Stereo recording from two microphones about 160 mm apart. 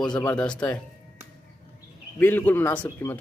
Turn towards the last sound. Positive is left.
turn(degrees=10)  # may be behind; listen again after turning